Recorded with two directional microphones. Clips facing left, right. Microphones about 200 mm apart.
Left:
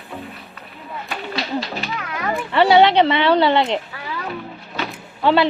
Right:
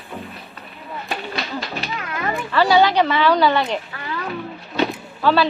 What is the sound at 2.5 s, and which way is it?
A woman's voice, 20° left (ahead or behind).